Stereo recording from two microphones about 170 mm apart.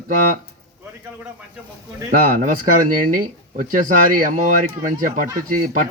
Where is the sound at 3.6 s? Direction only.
50° right (ahead or behind).